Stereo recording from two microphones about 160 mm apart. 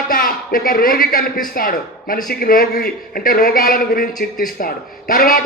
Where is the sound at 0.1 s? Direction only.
65° left (ahead or behind).